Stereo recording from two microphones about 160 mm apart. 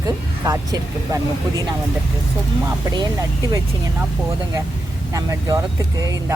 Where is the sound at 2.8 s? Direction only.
25° right (ahead or behind).